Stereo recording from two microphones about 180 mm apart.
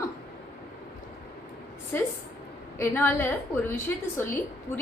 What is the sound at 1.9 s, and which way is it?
A woman's voice, 10° left (ahead or behind).